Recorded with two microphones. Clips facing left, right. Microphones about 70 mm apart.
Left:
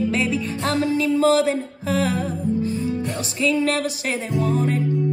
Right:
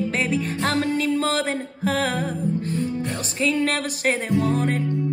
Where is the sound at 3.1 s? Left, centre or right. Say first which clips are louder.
Left 3 dB; right.